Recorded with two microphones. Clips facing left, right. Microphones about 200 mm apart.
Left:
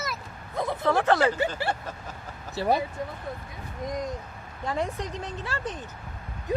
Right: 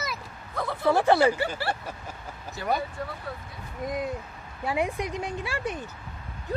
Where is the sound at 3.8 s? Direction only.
5° right (ahead or behind).